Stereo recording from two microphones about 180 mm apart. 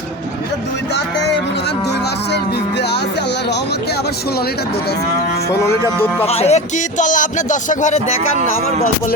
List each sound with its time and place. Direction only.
6.2 s music: 35° left (ahead or behind)